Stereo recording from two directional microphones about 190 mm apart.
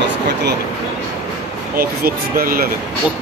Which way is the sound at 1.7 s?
50° right (ahead or behind).